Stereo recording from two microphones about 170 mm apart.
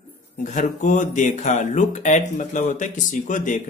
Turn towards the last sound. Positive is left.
turn(degrees=50)  # may be behind; listen again after turning